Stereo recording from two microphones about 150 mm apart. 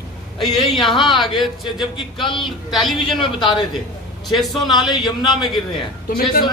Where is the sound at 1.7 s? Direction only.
30° left (ahead or behind).